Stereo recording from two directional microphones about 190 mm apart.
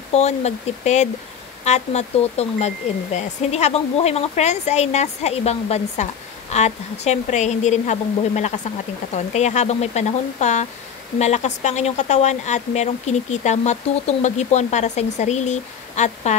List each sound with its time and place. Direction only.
0.1 s speech: 35° left (ahead or behind)